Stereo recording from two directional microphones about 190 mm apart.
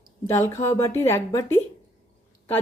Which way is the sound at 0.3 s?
15° left (ahead or behind).